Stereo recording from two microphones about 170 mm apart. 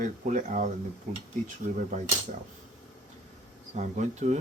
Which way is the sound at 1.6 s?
45° right (ahead or behind).